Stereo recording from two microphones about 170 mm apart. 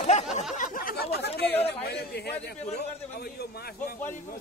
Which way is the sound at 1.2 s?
75° left (ahead or behind).